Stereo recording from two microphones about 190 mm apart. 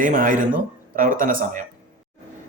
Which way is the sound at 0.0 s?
45° right (ahead or behind).